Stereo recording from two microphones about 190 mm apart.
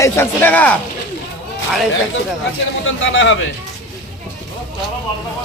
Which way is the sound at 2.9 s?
90° left.